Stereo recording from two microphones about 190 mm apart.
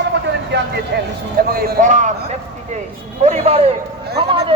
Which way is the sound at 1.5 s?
55° right (ahead or behind).